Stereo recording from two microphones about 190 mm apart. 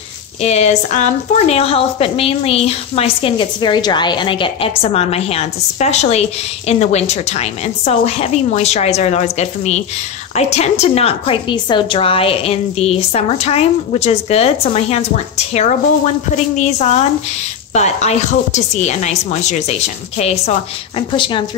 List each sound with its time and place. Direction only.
0.4 s a woman's voice: 35° left (ahead or behind)
17.7 s a woman's voice: 35° left (ahead or behind)